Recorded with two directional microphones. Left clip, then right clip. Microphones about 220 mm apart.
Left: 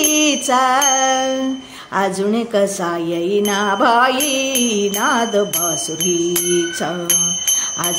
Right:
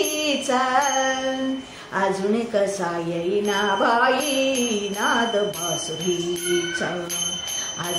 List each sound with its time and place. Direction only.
0.2 s music: 45° left (ahead or behind)
2.0 s a woman's voice: 45° left (ahead or behind)